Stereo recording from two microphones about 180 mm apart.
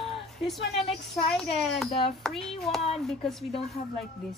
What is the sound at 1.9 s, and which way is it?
Speech, 30° left (ahead or behind).